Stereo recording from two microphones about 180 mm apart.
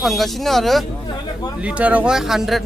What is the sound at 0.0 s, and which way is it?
Speech, centre (ahead or behind).